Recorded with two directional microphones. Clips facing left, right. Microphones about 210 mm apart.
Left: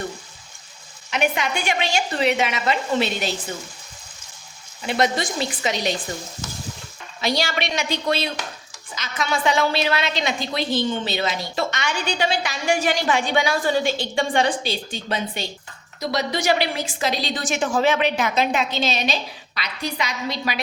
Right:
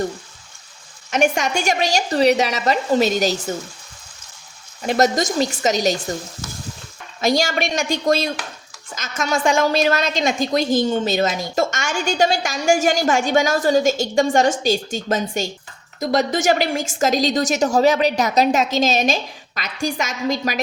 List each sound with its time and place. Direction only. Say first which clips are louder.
1.1 s a woman's voice: right 4 dB; 45° right (ahead or behind)
4.8 s a woman's voice: right 4 dB; 45° right (ahead or behind)
7.2 s a woman's voice: right 5 dB; 45° right (ahead or behind)